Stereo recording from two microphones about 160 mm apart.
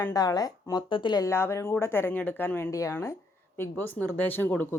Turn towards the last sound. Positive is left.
turn(degrees=10)  # may be behind; listen again after turning